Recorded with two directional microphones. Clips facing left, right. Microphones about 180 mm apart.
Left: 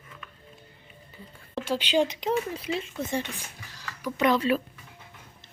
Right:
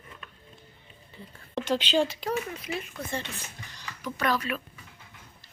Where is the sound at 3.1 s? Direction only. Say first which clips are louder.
Left 3 dB; 15° left (ahead or behind).